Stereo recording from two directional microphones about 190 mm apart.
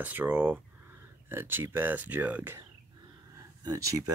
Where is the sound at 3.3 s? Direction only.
15° right (ahead or behind).